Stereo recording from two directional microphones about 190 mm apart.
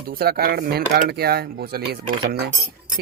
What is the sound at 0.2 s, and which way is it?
Speech, 55° right (ahead or behind).